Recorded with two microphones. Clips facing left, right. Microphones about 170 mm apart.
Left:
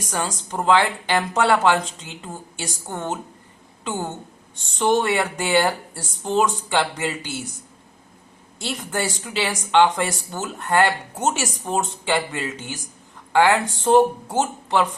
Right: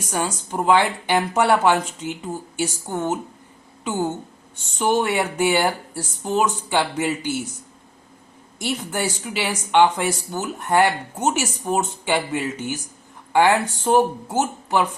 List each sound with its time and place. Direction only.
0.1 s a woman's voice: 10° right (ahead or behind)
4.8 s a woman's voice: 5° right (ahead or behind)
8.5 s a woman's voice: 10° right (ahead or behind)
11.2 s a woman's voice: centre (ahead or behind)
13.8 s a woman's voice: 5° right (ahead or behind)